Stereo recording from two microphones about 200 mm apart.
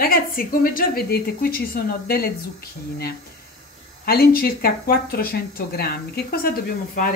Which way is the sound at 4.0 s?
50° left (ahead or behind).